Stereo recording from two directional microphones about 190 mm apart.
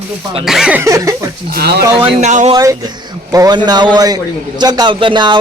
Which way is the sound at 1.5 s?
60° right (ahead or behind).